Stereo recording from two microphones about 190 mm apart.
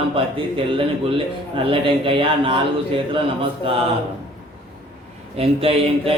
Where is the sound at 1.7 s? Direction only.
30° right (ahead or behind).